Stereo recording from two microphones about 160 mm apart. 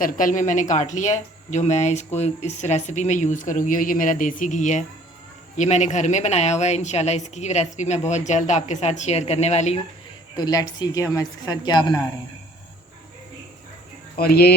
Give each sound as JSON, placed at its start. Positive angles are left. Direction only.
{"t": 0.0, "sound": "speech", "side_deg": 55}
{"t": 10.3, "sound": "a woman's voice", "side_deg": 25}
{"t": 14.2, "sound": "speech", "side_deg": 75}